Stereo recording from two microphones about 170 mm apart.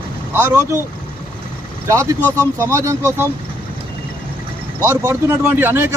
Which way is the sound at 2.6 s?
15° right (ahead or behind).